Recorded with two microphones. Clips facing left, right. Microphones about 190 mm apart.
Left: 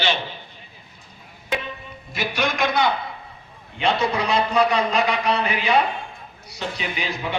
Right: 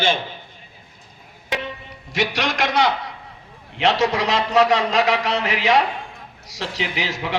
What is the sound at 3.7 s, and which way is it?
A man's voice, 90° right.